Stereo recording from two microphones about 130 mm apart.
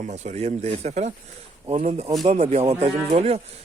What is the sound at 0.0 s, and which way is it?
Speech, 65° right (ahead or behind).